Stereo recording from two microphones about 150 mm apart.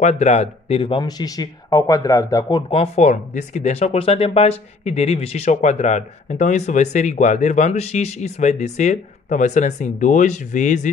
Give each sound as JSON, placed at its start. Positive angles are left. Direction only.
{"t": 0.0, "sound": "speech", "side_deg": 50}
{"t": 2.7, "sound": "speech", "side_deg": 45}